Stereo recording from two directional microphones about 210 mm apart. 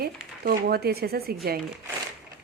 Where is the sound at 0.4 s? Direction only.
50° right (ahead or behind).